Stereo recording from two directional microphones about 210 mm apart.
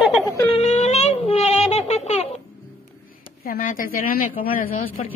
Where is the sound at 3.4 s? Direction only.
40° left (ahead or behind).